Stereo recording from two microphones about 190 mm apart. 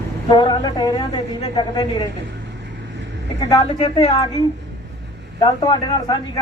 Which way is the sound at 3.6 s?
30° left (ahead or behind).